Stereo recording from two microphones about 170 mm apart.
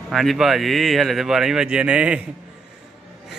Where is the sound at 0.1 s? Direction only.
Centre (ahead or behind).